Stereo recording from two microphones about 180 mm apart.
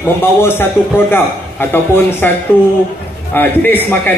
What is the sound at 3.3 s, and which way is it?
Speech, 10° left (ahead or behind).